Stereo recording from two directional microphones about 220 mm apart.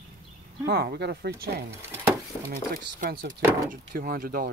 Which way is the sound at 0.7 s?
45° right (ahead or behind).